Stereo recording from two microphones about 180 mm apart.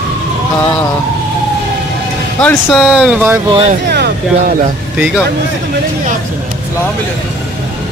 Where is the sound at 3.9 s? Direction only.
65° right (ahead or behind).